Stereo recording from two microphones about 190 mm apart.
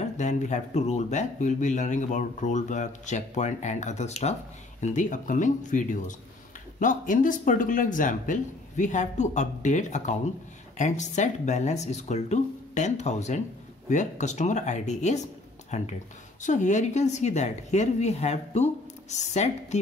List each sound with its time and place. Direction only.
0.0 s speech: 40° left (ahead or behind)